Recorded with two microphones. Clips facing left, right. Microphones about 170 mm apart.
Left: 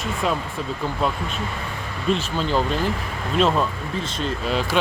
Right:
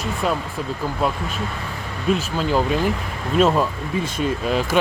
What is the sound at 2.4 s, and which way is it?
Speech, 10° right (ahead or behind).